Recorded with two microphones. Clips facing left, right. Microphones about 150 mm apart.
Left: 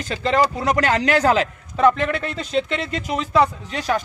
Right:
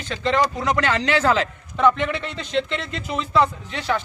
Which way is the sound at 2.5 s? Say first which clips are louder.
Left 2 dB; 40° left (ahead or behind).